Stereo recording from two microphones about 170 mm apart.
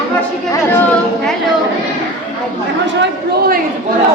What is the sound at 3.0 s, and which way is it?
Speech, 65° right (ahead or behind).